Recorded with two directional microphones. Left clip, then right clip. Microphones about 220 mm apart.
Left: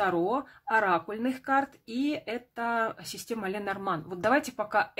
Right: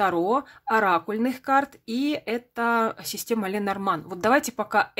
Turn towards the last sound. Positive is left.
turn(degrees=-30)  # may be behind; listen again after turning